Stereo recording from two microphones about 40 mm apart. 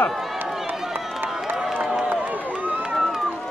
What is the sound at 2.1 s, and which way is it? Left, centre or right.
Run, right.